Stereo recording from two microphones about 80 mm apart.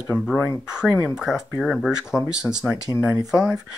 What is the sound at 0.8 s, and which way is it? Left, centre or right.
Speech, centre.